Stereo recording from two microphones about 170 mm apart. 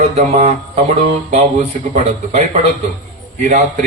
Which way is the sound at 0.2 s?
40° right (ahead or behind).